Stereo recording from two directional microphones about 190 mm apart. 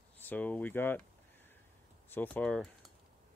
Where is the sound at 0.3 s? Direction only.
10° left (ahead or behind).